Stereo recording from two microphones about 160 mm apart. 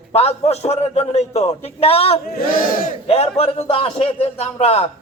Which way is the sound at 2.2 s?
65° left (ahead or behind).